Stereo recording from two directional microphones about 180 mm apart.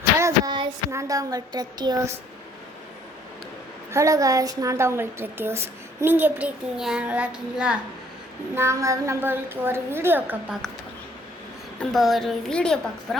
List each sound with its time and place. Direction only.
0.2 s a sound: 20° right (ahead or behind)
3.9 s a woman's voice: 15° right (ahead or behind)
8.5 s a woman's voice: 15° right (ahead or behind)
11.8 s a woman's voice: centre (ahead or behind)